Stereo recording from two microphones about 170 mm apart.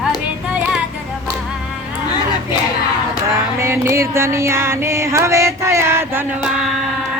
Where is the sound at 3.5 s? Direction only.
15° right (ahead or behind).